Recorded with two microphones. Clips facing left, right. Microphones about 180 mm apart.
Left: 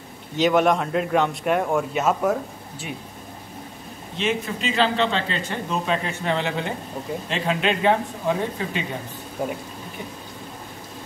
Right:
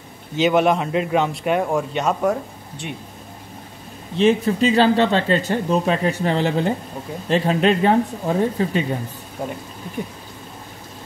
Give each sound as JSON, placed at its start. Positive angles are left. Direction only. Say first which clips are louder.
{"t": 0.4, "sound": "a man's voice", "louder": "right 2 dB", "side_deg": 0}
{"t": 4.2, "sound": "speech", "louder": "right 9 dB", "side_deg": -35}
{"t": 9.4, "sound": "a man's voice", "louder": "left 1 dB", "side_deg": 0}